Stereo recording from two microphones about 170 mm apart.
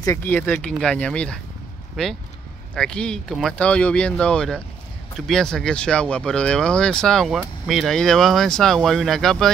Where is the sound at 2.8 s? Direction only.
5° left (ahead or behind).